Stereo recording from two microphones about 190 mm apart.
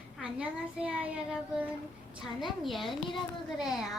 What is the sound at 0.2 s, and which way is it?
A child's voice, 5° right (ahead or behind).